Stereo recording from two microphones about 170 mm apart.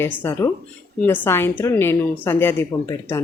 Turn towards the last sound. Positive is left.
turn(degrees=15)  # may be behind; listen again after turning